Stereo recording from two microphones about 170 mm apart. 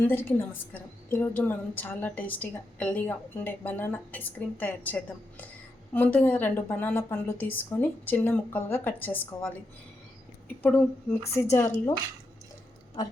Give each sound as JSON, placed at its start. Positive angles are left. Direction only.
{"t": 0.0, "sound": "a woman's voice", "side_deg": 10}
{"t": 10.6, "sound": "a woman's voice", "side_deg": 10}